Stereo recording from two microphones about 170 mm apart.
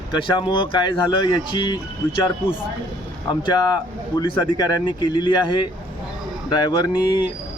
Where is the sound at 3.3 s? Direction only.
25° left (ahead or behind).